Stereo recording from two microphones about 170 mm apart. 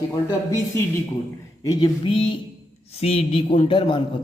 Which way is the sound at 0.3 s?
20° left (ahead or behind).